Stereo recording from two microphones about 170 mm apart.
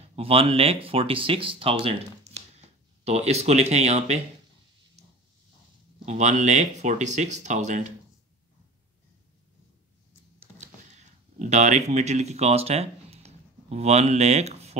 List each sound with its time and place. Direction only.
0.1 s speech: 35° right (ahead or behind)
6.0 s speech: 45° right (ahead or behind)
10.6 s a sound: 45° right (ahead or behind)